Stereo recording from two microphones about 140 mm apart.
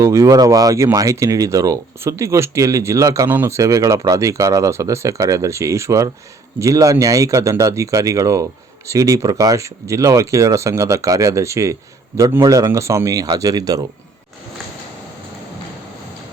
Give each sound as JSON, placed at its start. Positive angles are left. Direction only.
{"t": 0.0, "sound": "speech", "side_deg": -20}